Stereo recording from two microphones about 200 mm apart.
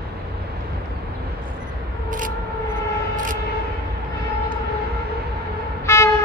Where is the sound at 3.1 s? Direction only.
40° right (ahead or behind).